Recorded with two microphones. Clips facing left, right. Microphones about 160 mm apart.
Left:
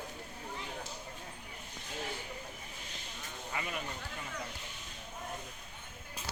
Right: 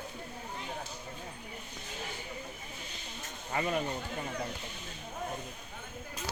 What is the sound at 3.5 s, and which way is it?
Speech, 40° right (ahead or behind).